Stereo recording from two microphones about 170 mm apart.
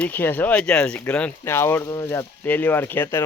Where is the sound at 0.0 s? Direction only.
10° left (ahead or behind).